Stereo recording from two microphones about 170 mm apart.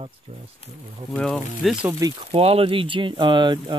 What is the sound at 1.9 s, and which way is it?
Speech, 20° right (ahead or behind).